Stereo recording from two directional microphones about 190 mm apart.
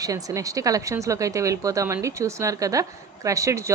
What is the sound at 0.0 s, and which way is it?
A woman's voice, 20° right (ahead or behind).